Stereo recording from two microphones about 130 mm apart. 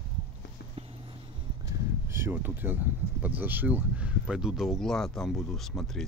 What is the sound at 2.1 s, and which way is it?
Speech, 15° right (ahead or behind).